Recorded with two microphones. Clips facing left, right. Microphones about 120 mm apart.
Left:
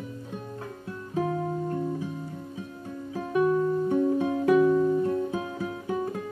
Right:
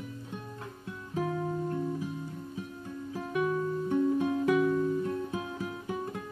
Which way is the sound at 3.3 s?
35° left (ahead or behind).